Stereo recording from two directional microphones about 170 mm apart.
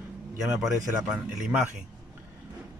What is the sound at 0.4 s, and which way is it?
Speech, centre (ahead or behind).